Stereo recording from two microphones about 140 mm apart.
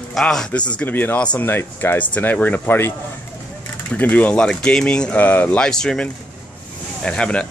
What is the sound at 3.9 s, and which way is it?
Speech, 10° left (ahead or behind).